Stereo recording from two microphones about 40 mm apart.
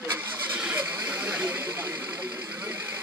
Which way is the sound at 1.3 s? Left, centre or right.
Right.